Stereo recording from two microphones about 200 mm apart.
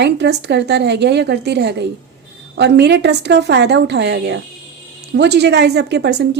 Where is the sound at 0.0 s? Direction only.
55° right (ahead or behind).